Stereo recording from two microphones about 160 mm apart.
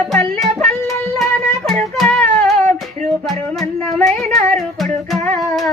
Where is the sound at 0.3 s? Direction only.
Centre (ahead or behind).